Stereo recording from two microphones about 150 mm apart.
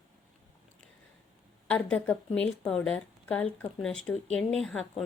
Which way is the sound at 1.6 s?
10° left (ahead or behind).